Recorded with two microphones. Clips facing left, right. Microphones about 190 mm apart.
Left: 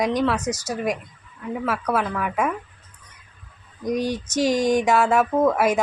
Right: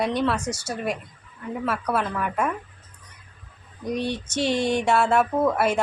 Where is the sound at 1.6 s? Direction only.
5° left (ahead or behind).